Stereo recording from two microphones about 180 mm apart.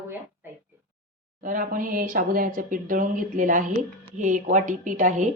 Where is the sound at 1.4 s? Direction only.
50° right (ahead or behind).